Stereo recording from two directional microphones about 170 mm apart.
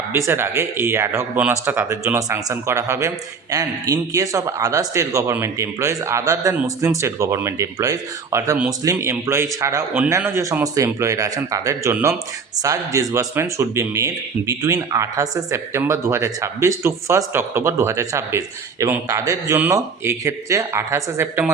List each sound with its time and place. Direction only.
0.1 s a man's voice: 15° right (ahead or behind)